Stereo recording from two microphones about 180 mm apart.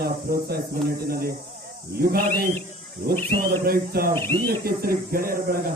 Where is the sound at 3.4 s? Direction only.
55° right (ahead or behind).